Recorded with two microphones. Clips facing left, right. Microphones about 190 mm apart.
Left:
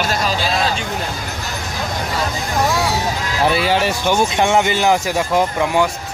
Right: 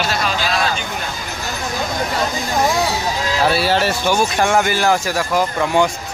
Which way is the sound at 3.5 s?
15° left (ahead or behind).